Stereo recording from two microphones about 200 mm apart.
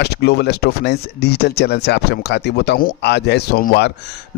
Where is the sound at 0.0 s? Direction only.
55° left (ahead or behind).